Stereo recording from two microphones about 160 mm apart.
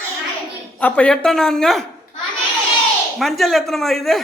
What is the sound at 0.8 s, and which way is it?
Speech, 10° left (ahead or behind).